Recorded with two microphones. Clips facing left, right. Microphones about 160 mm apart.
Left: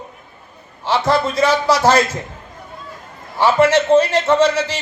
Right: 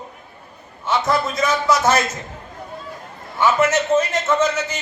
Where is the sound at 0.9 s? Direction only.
30° left (ahead or behind).